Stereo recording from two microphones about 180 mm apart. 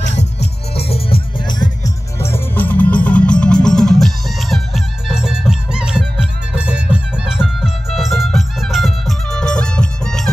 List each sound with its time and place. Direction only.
0.7 s music: 35° left (ahead or behind)
2.1 s music: 15° left (ahead or behind)